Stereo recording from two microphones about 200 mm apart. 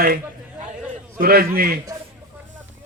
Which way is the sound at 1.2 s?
50° right (ahead or behind).